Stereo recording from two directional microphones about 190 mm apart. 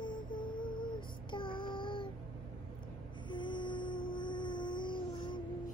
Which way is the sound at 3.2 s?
25° left (ahead or behind).